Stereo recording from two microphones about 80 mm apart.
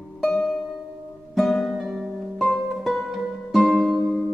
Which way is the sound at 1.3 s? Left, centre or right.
Centre.